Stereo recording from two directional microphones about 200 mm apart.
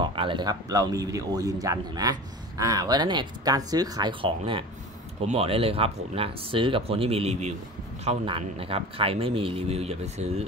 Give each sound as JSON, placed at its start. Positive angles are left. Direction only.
{"t": 0.0, "sound": "speech", "side_deg": -25}